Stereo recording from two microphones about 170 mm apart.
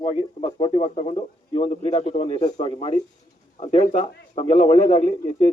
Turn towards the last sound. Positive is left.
turn(degrees=40)  # may be behind; listen again after turning